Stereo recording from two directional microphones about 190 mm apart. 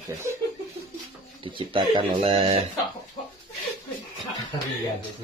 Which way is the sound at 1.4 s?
25° right (ahead or behind).